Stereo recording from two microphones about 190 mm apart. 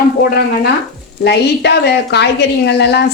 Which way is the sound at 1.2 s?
60° left (ahead or behind).